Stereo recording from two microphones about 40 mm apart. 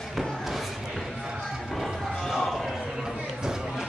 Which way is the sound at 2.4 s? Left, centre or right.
Centre.